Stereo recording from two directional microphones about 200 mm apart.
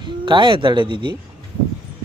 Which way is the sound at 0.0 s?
25° right (ahead or behind).